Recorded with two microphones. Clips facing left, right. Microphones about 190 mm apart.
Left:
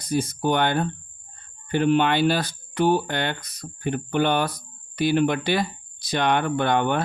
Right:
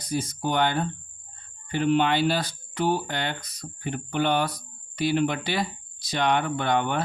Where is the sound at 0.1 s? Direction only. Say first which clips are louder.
Left 4 dB; 60° left (ahead or behind).